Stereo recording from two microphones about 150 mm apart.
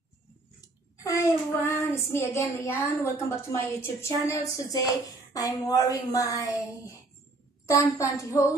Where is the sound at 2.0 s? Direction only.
20° left (ahead or behind).